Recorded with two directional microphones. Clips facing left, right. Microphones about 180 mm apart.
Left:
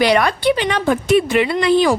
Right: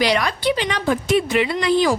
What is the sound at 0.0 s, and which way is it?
A woman's voice, 55° left (ahead or behind).